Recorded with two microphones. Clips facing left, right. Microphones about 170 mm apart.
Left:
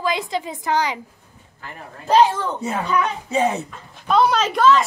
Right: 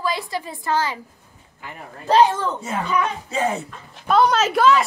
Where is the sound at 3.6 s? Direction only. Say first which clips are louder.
Right 1 dB; centre (ahead or behind).